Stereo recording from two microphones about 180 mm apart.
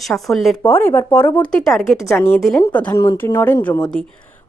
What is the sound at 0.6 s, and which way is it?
Speech, 10° left (ahead or behind).